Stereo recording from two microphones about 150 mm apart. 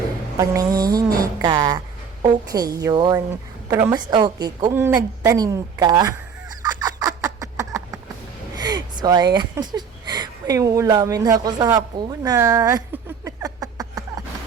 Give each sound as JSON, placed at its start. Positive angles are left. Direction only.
{"t": 0.3, "sound": "speech", "side_deg": -25}
{"t": 4.7, "sound": "speech", "side_deg": -15}
{"t": 6.6, "sound": "fowl", "side_deg": -25}
{"t": 8.5, "sound": "a sound", "side_deg": -30}